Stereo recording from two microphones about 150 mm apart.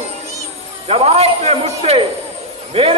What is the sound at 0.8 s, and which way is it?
A man's voice, 45° right (ahead or behind).